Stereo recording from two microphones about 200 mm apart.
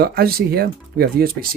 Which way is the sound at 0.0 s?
50° right (ahead or behind).